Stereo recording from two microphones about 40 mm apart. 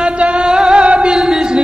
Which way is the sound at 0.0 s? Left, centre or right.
Right.